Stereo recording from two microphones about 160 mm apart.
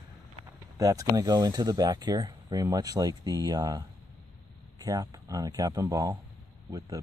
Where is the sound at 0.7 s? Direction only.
20° right (ahead or behind).